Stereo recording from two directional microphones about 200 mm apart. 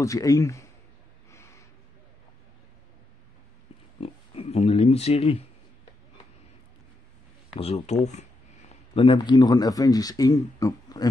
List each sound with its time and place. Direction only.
0.0 s speech: 15° left (ahead or behind)
1.3 s snort: 15° left (ahead or behind)
4.0 s a sound: 30° left (ahead or behind)
7.5 s speech: 30° left (ahead or behind)